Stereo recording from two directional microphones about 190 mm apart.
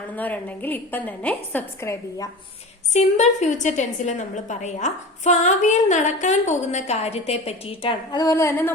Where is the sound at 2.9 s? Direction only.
35° left (ahead or behind).